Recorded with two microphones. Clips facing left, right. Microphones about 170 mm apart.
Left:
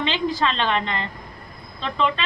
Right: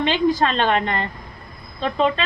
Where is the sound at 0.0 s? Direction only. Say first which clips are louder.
Right 4 dB; 50° right (ahead or behind).